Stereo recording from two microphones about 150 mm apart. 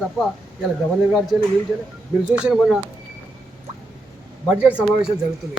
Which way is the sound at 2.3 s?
5° right (ahead or behind).